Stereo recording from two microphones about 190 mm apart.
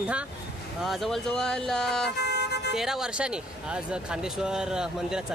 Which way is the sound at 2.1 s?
60° left (ahead or behind).